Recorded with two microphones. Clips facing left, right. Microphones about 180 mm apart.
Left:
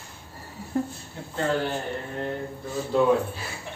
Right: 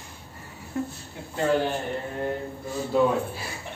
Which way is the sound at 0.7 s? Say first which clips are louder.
Left 3 dB; 35° left (ahead or behind).